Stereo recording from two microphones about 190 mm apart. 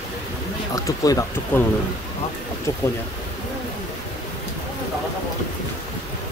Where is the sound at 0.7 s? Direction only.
20° left (ahead or behind).